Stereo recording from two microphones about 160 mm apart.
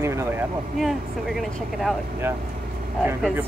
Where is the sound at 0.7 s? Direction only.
Centre (ahead or behind).